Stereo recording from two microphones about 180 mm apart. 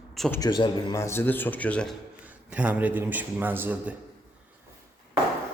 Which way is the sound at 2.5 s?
10° right (ahead or behind).